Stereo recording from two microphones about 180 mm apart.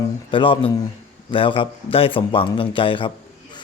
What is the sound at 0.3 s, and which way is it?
A man's voice, 30° left (ahead or behind).